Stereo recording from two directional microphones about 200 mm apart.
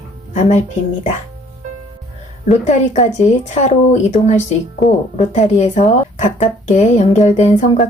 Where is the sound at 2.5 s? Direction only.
35° left (ahead or behind).